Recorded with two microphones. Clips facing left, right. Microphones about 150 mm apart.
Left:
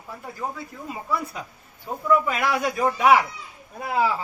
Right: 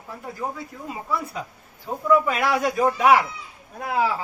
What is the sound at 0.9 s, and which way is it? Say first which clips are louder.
A man's voice: even; centre (ahead or behind).